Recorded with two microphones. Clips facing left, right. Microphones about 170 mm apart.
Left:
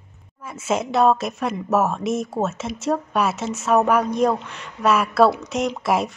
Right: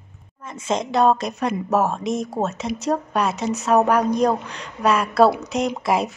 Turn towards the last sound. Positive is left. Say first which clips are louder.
# even
turn(degrees=0)  # may be behind; listen again after turning